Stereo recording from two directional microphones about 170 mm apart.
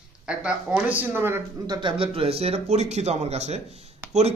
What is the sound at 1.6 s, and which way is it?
Speech, 30° right (ahead or behind).